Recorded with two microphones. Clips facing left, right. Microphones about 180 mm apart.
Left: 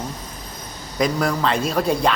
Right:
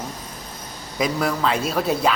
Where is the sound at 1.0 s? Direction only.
5° right (ahead or behind).